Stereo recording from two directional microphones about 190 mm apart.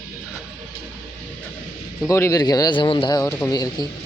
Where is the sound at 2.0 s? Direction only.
15° left (ahead or behind).